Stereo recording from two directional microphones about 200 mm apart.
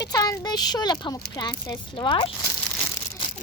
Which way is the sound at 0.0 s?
20° left (ahead or behind).